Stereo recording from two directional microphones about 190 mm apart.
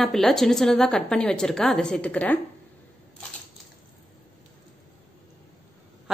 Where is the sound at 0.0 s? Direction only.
Centre (ahead or behind).